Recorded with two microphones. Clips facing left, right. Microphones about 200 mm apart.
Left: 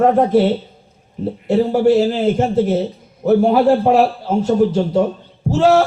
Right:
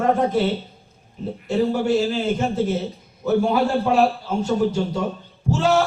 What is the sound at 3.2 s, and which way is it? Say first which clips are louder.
A man's voice: left 7 dB; 55° left (ahead or behind).